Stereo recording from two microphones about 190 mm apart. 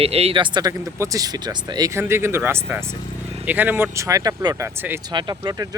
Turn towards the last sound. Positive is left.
turn(degrees=-20)  # may be behind; listen again after turning